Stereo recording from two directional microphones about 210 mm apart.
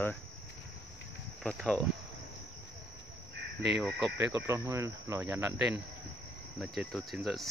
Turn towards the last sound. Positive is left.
turn(degrees=0)  # may be behind; listen again after turning